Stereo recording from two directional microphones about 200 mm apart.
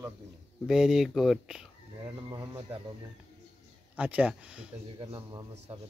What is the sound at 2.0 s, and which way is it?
Speech, 15° right (ahead or behind).